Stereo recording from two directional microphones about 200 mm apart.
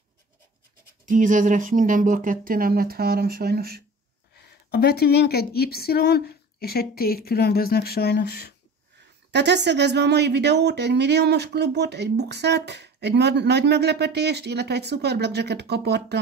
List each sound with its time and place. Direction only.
1.0 s speech: 40° right (ahead or behind)
4.4 s speech: 55° left (ahead or behind)
9.3 s speech: 60° right (ahead or behind)